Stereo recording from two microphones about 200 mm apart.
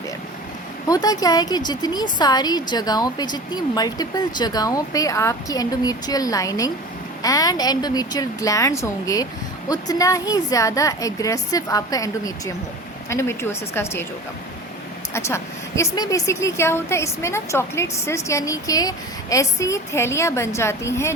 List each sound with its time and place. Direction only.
0.9 s a woman's voice: 20° left (ahead or behind)
15.1 s a woman's voice: 15° left (ahead or behind)